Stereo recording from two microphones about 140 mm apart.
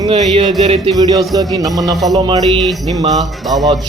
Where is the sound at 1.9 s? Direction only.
Centre (ahead or behind).